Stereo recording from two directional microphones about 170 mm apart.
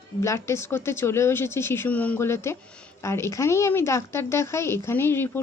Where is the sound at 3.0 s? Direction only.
15° left (ahead or behind).